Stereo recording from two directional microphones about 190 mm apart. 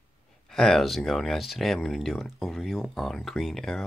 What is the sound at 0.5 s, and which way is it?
Speech, centre (ahead or behind).